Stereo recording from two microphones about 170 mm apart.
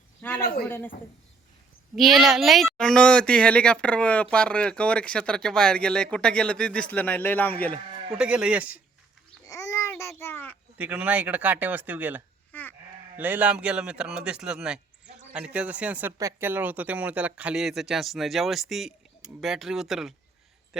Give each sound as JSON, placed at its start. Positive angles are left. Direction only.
{"t": 0.2, "sound": "a sound", "side_deg": 10}
{"t": 2.0, "sound": "speech", "side_deg": 0}
{"t": 7.7, "sound": "livestock", "side_deg": -35}
{"t": 8.2, "sound": "speech", "side_deg": -5}
{"t": 9.5, "sound": "babbling", "side_deg": 20}
{"t": 9.9, "sound": "a child's voice", "side_deg": 15}
{"t": 10.8, "sound": "speech", "side_deg": -10}
{"t": 12.5, "sound": "sheep", "side_deg": 10}
{"t": 13.1, "sound": "speech", "side_deg": -10}